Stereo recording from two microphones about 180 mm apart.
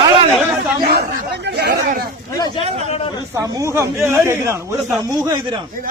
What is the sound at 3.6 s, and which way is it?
Speech, 15° right (ahead or behind).